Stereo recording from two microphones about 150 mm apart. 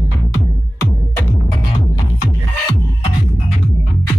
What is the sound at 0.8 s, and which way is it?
Music, 15° left (ahead or behind).